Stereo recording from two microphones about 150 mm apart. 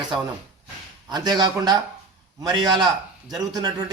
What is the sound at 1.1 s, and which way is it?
A man's voice, 25° right (ahead or behind).